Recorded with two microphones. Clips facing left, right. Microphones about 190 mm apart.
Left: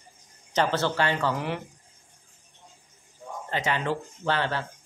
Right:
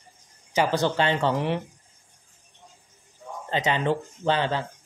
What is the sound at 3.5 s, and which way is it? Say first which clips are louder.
Speech: right 4 dB; 20° right (ahead or behind).